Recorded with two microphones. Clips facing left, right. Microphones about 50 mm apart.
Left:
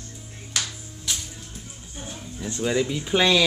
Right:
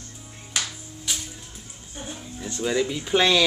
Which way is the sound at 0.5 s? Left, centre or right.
Centre.